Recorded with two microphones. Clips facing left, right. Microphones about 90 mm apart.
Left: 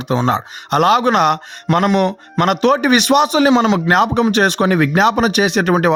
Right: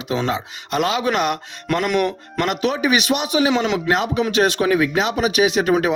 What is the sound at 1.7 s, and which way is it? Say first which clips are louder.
Speech: left 5 dB; 25° left (ahead or behind).